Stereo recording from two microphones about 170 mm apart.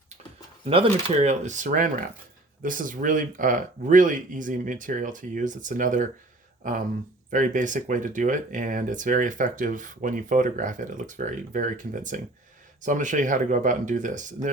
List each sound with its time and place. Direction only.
0.6 s speech: 35° right (ahead or behind)